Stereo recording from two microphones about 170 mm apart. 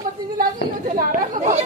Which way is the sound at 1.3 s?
45° right (ahead or behind).